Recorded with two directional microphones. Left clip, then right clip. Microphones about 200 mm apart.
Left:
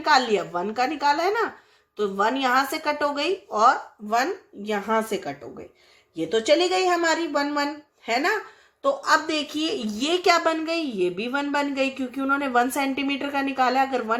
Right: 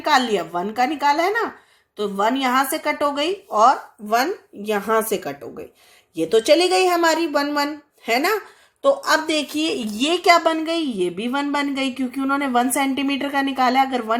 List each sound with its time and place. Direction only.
0.0 s a woman's voice: 40° right (ahead or behind)